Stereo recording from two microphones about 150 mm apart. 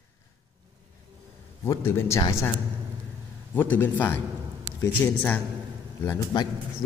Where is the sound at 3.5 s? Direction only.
15° left (ahead or behind).